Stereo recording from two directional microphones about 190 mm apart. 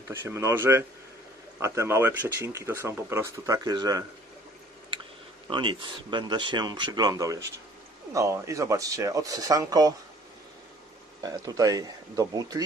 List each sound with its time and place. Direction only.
0.1 s speech: 15° right (ahead or behind)
5.5 s speech: 25° right (ahead or behind)
11.2 s speech: 20° right (ahead or behind)